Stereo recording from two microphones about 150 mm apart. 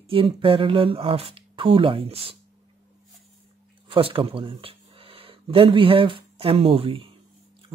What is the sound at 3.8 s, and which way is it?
Speech, 35° right (ahead or behind).